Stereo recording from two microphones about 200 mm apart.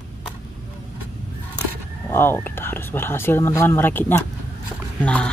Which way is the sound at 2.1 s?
10° left (ahead or behind).